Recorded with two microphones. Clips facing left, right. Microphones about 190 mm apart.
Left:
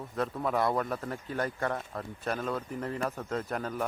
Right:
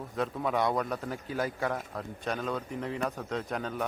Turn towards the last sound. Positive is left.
turn(degrees=0)  # may be behind; listen again after turning